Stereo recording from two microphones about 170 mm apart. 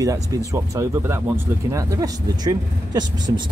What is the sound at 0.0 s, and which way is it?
Speech, 20° right (ahead or behind).